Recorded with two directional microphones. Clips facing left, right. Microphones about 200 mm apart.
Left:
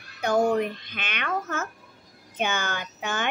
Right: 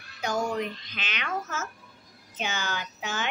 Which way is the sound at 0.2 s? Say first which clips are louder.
Left 6 dB; 60° left (ahead or behind).